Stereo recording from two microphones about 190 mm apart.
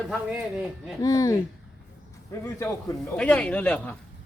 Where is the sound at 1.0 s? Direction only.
20° left (ahead or behind).